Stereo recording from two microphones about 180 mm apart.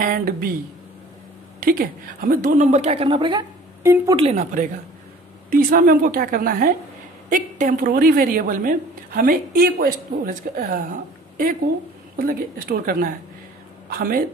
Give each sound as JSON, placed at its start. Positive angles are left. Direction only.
{"t": 0.0, "sound": "speech", "side_deg": -55}
{"t": 1.6, "sound": "a woman's voice", "side_deg": -55}
{"t": 4.2, "sound": "a woman's voice", "side_deg": -40}
{"t": 5.5, "sound": "a woman's voice", "side_deg": -55}
{"t": 12.2, "sound": "a woman's voice", "side_deg": -55}